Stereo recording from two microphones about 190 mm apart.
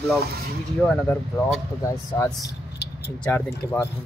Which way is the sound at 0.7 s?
5° left (ahead or behind).